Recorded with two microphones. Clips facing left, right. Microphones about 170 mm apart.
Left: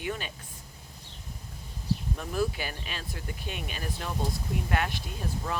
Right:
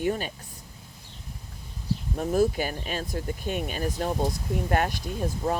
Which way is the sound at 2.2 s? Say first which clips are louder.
Right 11 dB; 45° right (ahead or behind).